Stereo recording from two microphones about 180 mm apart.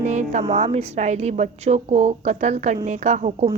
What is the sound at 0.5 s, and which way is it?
A woman's voice, 35° right (ahead or behind).